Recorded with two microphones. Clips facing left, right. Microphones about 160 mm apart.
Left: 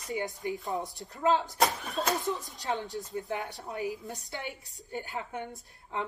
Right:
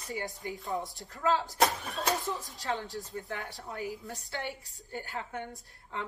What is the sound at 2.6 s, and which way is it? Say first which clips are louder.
A woman's voice: left 2 dB; 20° left (ahead or behind).